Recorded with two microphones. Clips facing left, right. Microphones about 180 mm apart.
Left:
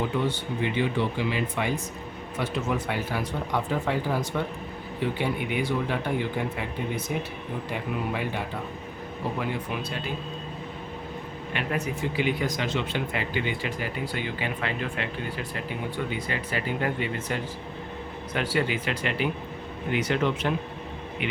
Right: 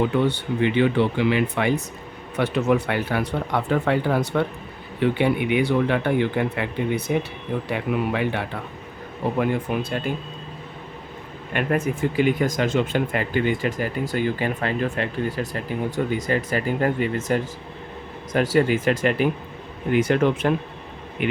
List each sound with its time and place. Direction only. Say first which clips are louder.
0.3 s speech: right 6 dB; 65° right (ahead or behind)
9.4 s speech: right 11 dB; 50° right (ahead or behind)
11.5 s speech: right 7 dB; 50° right (ahead or behind)